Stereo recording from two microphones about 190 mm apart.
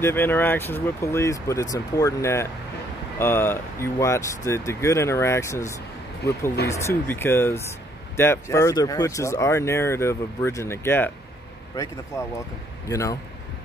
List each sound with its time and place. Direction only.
0.0 s speech: 10° left (ahead or behind)